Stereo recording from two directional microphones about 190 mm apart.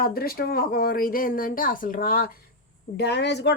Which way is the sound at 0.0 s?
50° left (ahead or behind).